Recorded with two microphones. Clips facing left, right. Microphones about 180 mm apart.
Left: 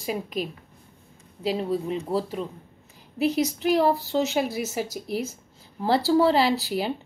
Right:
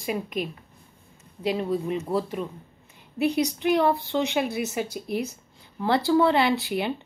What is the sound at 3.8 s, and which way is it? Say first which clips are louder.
A woman's voice: left 2 dB; 40° left (ahead or behind).